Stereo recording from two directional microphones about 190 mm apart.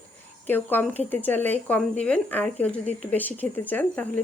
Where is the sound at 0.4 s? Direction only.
10° left (ahead or behind).